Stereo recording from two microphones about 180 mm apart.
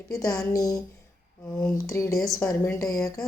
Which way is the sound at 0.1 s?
20° left (ahead or behind).